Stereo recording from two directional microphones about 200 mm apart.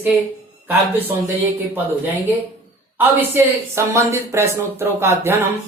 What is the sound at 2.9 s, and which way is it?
Speech, 10° right (ahead or behind).